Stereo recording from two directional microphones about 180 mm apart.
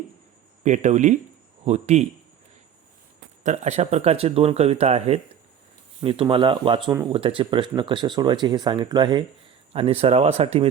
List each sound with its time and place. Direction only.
0.6 s speech: 40° right (ahead or behind)
3.4 s speech: 40° right (ahead or behind)